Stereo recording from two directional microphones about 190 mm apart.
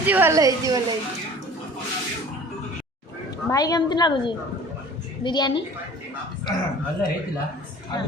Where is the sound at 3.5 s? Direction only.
20° left (ahead or behind).